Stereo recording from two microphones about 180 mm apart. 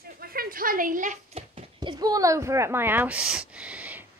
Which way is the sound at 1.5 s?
25° right (ahead or behind).